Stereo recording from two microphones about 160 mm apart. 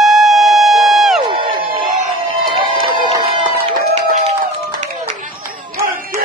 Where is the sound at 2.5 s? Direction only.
30° right (ahead or behind).